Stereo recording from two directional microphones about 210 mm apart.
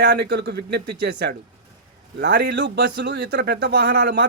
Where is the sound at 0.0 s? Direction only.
55° right (ahead or behind).